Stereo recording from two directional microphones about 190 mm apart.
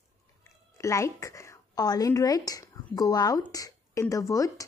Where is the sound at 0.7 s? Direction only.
15° left (ahead or behind).